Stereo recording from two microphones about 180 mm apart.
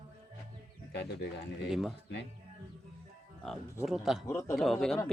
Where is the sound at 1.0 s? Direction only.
65° left (ahead or behind).